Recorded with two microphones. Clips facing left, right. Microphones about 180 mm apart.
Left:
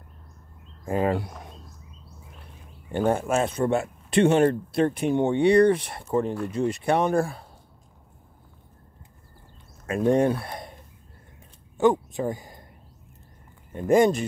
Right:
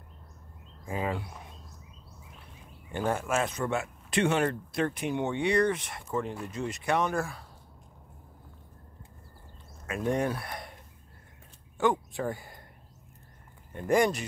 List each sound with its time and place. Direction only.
0.8 s speech: 50° left (ahead or behind)
2.9 s speech: 30° left (ahead or behind)
5.0 s speech: 50° left (ahead or behind)
5.3 s speech: 30° left (ahead or behind)
9.8 s speech: 30° left (ahead or behind)
11.8 s speech: 20° left (ahead or behind)
13.7 s speech: 25° left (ahead or behind)